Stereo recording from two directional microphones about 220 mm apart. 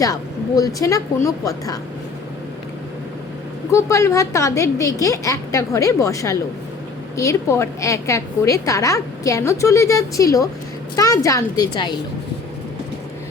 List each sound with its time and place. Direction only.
0.0 s a woman's voice: 15° left (ahead or behind)
3.7 s a woman's voice: 15° left (ahead or behind)